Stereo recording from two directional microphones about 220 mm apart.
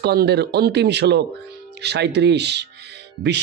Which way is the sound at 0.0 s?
50° right (ahead or behind).